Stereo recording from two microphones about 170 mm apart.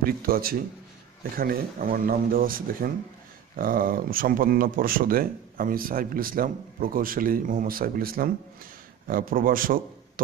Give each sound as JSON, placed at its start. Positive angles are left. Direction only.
{"t": 0.0, "sound": "a man's voice", "side_deg": -60}